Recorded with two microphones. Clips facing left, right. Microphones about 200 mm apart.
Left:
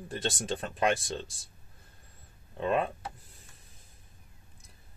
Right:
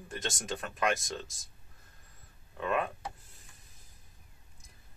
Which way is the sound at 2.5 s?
30° left (ahead or behind).